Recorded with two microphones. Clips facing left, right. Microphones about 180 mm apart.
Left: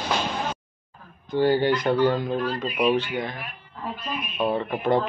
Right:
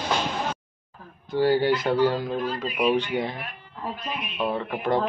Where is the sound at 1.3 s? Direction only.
5° right (ahead or behind).